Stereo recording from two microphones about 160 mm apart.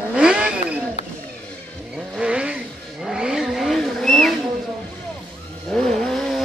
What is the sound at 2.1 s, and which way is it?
Vehicle, 5° right (ahead or behind).